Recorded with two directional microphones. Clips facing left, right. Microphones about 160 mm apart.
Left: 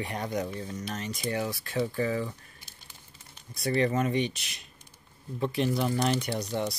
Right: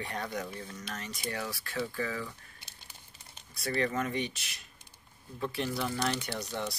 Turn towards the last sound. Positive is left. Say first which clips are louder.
# left 5 dB
turn(degrees=15)  # may be behind; listen again after turning